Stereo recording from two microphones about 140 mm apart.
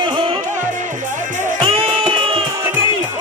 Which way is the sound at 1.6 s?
40° right (ahead or behind).